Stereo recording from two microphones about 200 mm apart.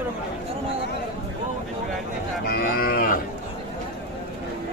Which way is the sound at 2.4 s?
45° left (ahead or behind).